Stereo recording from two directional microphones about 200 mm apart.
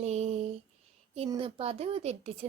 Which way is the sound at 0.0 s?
35° right (ahead or behind).